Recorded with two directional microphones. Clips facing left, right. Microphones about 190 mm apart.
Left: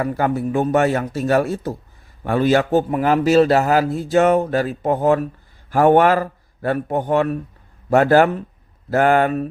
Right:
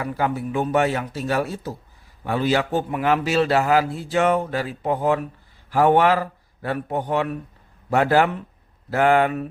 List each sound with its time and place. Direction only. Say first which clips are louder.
0.0 s speech: left 4 dB; 50° left (ahead or behind)